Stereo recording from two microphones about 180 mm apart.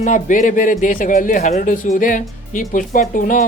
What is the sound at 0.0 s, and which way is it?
A man's voice, 45° left (ahead or behind).